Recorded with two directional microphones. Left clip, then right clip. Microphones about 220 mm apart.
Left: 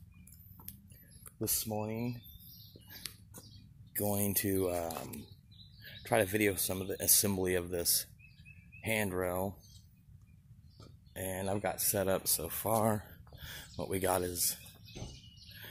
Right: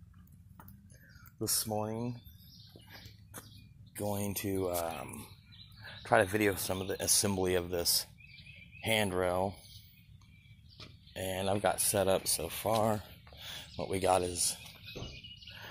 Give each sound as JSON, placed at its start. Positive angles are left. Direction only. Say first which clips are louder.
{"t": 1.6, "sound": "speech", "louder": "right 2 dB", "side_deg": 5}
{"t": 3.9, "sound": "speech", "louder": "left 1 dB", "side_deg": 25}
{"t": 5.9, "sound": "speech", "louder": "right 3 dB", "side_deg": 15}
{"t": 11.1, "sound": "speech", "louder": "right 3 dB", "side_deg": 5}